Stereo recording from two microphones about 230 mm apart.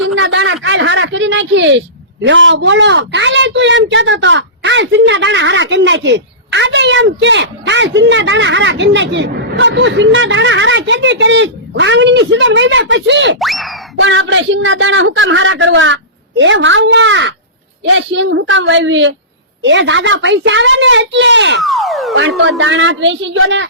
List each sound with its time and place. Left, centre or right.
0.0 s a sound: right
2.2 s a woman's voice: right
13.4 s boing: centre
14.0 s a woman's voice: right
21.6 s a sound: centre
22.4 s a woman's voice: right